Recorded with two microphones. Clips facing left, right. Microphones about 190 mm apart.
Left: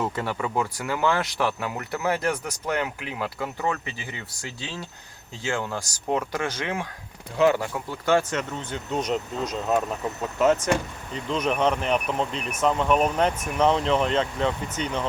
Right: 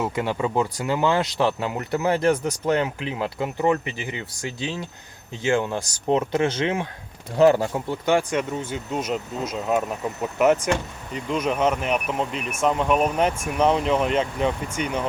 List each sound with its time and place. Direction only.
0.0 s speech: 20° right (ahead or behind)
7.3 s speech: 35° right (ahead or behind)
7.7 s speech: 20° right (ahead or behind)